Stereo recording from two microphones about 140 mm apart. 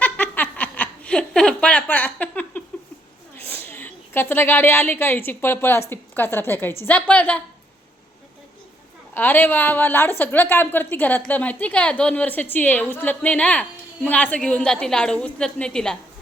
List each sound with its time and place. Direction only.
0.0 s a sound: 10° left (ahead or behind)
3.3 s a woman's voice: 15° left (ahead or behind)
9.1 s a woman's voice: 15° left (ahead or behind)